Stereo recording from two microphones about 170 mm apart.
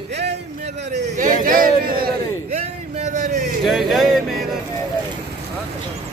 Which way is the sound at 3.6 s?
Centre (ahead or behind).